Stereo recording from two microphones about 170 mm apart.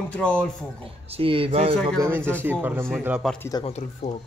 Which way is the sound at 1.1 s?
30° right (ahead or behind).